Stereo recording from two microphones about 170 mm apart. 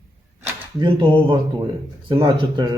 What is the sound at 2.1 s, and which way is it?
Speech, 30° right (ahead or behind).